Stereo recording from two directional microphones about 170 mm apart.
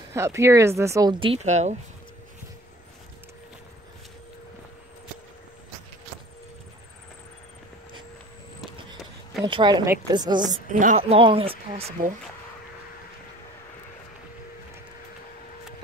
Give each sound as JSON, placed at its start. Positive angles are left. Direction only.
{"t": 0.1, "sound": "speech", "side_deg": -15}
{"t": 1.2, "sound": "speech", "side_deg": -40}
{"t": 9.4, "sound": "a woman's voice", "side_deg": -30}
{"t": 10.7, "sound": "speech", "side_deg": -50}